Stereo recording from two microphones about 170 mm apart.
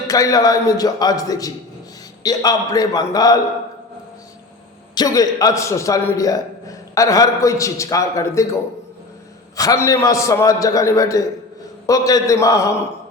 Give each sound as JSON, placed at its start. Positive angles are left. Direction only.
{"t": 0.1, "sound": "a man's voice", "side_deg": 20}
{"t": 4.9, "sound": "a man's voice", "side_deg": 20}
{"t": 9.6, "sound": "a man's voice", "side_deg": 20}